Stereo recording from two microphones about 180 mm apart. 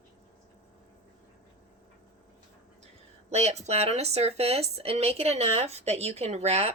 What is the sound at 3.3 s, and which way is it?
Speech, 35° right (ahead or behind).